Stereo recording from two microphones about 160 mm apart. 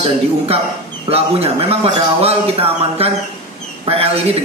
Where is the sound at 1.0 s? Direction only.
40° right (ahead or behind).